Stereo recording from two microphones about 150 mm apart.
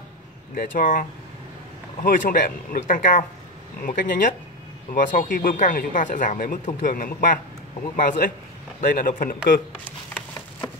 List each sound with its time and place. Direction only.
0.6 s speech: 65° left (ahead or behind)
2.0 s speech: 65° left (ahead or behind)